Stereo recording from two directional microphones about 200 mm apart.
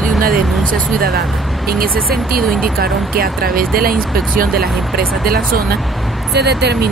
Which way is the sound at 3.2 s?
50° right (ahead or behind).